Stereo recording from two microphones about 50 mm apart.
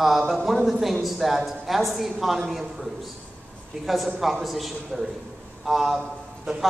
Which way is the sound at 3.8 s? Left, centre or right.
Centre.